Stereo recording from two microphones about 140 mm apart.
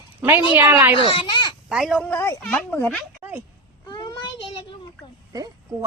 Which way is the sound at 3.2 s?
10° right (ahead or behind).